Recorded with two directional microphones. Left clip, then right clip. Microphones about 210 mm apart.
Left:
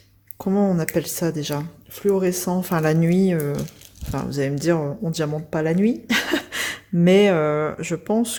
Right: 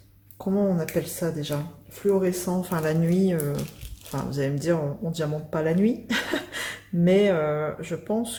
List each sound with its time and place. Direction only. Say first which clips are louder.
0.3 s speech: left 4 dB; 45° left (ahead or behind)